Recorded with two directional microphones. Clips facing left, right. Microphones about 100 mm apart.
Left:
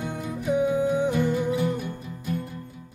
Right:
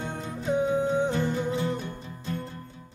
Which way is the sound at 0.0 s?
30° right (ahead or behind).